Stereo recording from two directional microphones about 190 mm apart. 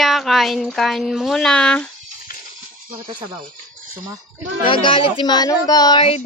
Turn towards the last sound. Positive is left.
turn(degrees=30)  # may be behind; listen again after turning